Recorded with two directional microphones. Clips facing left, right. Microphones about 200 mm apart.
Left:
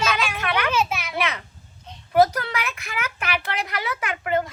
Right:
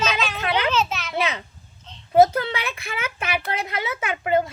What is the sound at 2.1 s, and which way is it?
A woman's voice, 25° right (ahead or behind).